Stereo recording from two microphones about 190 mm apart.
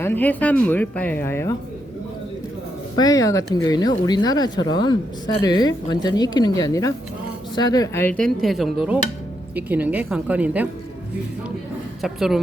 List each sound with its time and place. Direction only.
0.0 s speech: 10° left (ahead or behind)
2.9 s a woman's voice: 20° left (ahead or behind); by 10.7 s 5° right (ahead or behind)
12.0 s speech: centre (ahead or behind)